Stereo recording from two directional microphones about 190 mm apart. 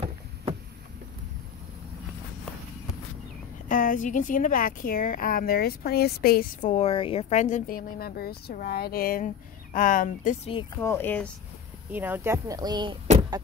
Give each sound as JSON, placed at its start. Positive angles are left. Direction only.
{"t": 3.6, "sound": "a woman's voice", "side_deg": 45}
{"t": 10.8, "sound": "speech", "side_deg": 10}
{"t": 11.9, "sound": "speech", "side_deg": -10}